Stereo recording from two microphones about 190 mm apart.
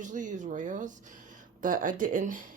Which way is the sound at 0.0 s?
40° right (ahead or behind).